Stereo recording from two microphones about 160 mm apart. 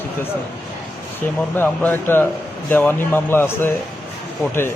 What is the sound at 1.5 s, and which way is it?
A man's voice, 10° left (ahead or behind).